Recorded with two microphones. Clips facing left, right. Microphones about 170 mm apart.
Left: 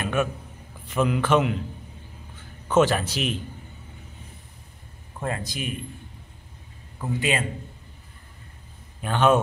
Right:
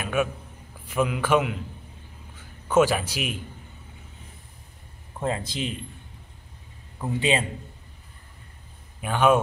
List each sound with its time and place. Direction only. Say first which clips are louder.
0.0 s a sound: even; 10° right (ahead or behind)
0.8 s a man's voice: left 1 dB; 5° right (ahead or behind)
2.7 s a man's voice: even; 10° right (ahead or behind)
5.2 s speech: right 2 dB; 25° right (ahead or behind)
7.2 s speech: right 2 dB; 30° right (ahead or behind)
9.0 s a man's voice: even; 10° right (ahead or behind)